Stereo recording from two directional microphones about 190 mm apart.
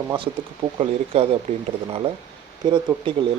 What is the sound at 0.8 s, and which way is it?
Speech, 30° right (ahead or behind).